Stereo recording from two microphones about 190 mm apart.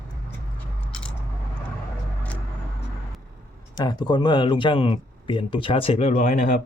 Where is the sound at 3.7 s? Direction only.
20° left (ahead or behind).